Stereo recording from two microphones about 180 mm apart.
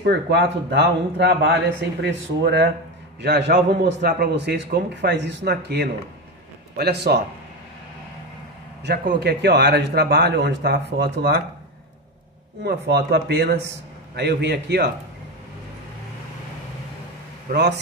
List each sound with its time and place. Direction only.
0.0 s speech: 70° right (ahead or behind)
3.2 s a man's voice: 70° right (ahead or behind)
8.8 s speech: 65° right (ahead or behind)
12.6 s speech: 65° right (ahead or behind)
17.5 s speech: 65° right (ahead or behind)